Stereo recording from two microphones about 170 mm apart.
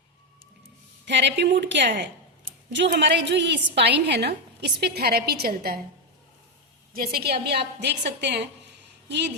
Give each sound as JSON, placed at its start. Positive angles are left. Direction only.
{"t": 1.0, "sound": "a woman's voice", "side_deg": -90}
{"t": 6.9, "sound": "a woman's voice", "side_deg": -60}